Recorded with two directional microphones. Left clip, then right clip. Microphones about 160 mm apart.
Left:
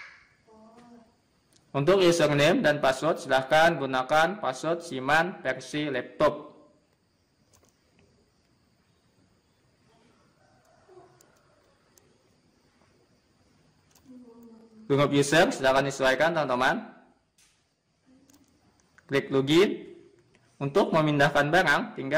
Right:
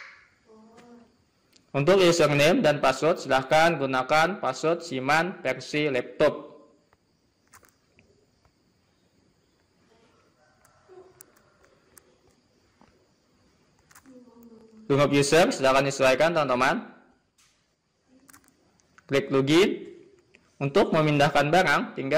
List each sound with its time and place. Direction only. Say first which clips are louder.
1.5 s a man's voice: right 2 dB; 15° right (ahead or behind)
14.9 s a man's voice: right 2 dB; 20° right (ahead or behind)
18.9 s a man's voice: right 2 dB; 20° right (ahead or behind)